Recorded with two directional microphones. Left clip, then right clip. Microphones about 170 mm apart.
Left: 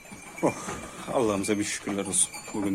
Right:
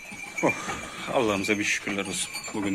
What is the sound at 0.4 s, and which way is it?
Speech, 10° left (ahead or behind).